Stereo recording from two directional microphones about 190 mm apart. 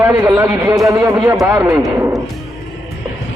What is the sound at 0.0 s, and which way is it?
A man's voice, 15° right (ahead or behind).